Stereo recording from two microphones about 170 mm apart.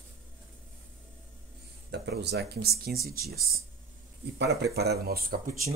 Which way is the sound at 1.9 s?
75° right (ahead or behind).